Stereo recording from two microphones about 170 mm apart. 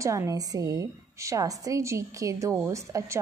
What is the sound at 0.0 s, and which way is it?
A woman's voice, 20° right (ahead or behind).